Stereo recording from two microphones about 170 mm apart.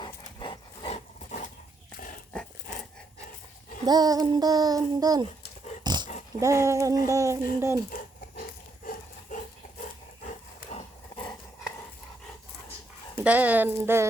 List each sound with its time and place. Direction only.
0.0 s dog: 25° left (ahead or behind)
3.8 s child singing: 20° right (ahead or behind)
5.8 s dog: 25° right (ahead or behind)
6.4 s speech: 15° right (ahead or behind)
7.9 s dog: 55° left (ahead or behind)
10.8 s horse: 30° left (ahead or behind)
13.1 s speech: 10° right (ahead or behind)